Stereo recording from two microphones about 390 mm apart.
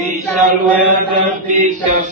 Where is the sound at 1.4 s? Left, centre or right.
Centre.